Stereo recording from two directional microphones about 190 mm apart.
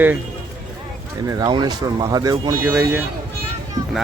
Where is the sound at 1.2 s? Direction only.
20° right (ahead or behind).